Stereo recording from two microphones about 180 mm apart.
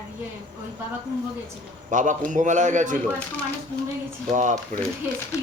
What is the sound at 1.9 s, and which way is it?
Speech, 45° right (ahead or behind).